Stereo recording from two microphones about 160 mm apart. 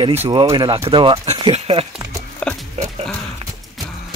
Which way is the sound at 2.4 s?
5° left (ahead or behind).